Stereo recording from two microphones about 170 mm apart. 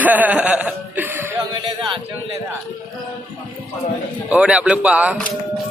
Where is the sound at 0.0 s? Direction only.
10° right (ahead or behind).